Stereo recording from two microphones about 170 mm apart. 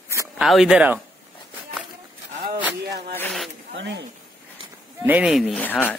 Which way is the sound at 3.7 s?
90° right.